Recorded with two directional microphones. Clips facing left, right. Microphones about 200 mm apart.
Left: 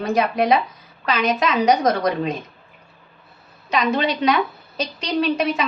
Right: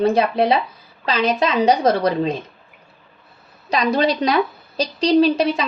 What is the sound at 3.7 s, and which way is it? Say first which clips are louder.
A woman's voice: right 2 dB; 35° right (ahead or behind).